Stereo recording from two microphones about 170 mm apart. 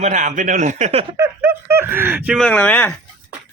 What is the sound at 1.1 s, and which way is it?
Speech, 15° right (ahead or behind).